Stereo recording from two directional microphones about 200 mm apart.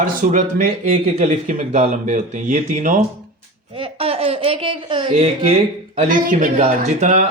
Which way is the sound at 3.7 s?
30° right (ahead or behind).